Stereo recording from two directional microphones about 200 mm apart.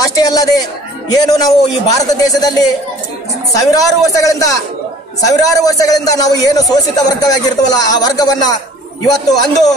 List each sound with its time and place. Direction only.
0.0 s a man's voice: 20° left (ahead or behind)